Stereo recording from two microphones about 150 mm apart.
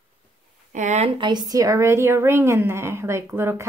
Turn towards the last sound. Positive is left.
turn(degrees=-15)  # may be behind; listen again after turning